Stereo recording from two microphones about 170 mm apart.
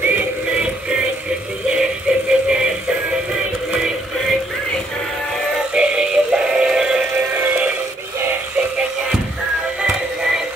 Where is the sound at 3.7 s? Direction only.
5° right (ahead or behind).